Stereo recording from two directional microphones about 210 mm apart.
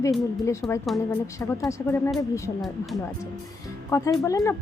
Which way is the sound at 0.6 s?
15° left (ahead or behind).